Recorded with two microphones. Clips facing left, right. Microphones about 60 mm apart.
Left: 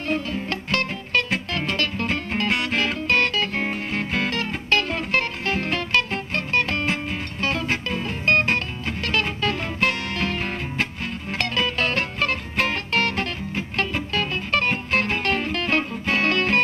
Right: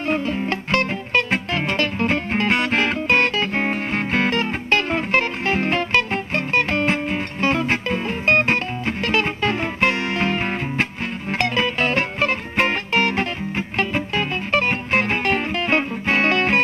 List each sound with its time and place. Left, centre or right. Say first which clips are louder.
0.0 s music: right 4 dB; right
3.6 s music: right 4 dB; right